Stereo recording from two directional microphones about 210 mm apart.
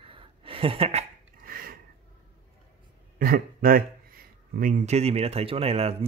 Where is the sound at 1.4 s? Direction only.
45° right (ahead or behind).